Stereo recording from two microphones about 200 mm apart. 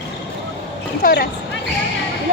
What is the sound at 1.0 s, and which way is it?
Speech, 45° left (ahead or behind).